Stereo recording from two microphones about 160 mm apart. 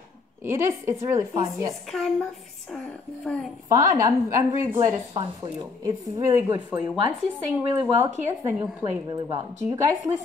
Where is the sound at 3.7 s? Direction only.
20° right (ahead or behind).